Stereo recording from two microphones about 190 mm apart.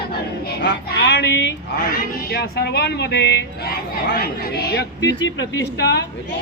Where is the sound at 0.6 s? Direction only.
65° left (ahead or behind).